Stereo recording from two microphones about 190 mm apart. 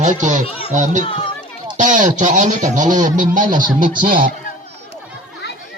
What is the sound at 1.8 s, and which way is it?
Speech, 40° right (ahead or behind).